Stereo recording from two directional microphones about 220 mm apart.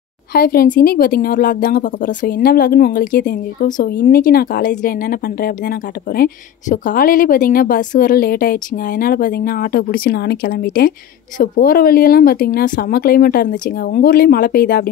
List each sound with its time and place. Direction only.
0.3 s speech: 45° left (ahead or behind)